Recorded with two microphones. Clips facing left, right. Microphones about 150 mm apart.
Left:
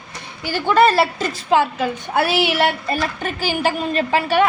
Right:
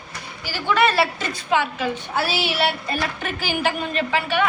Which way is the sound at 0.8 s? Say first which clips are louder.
Left 5 dB; 40° left (ahead or behind).